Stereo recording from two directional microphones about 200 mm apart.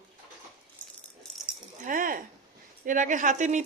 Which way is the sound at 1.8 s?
40° right (ahead or behind).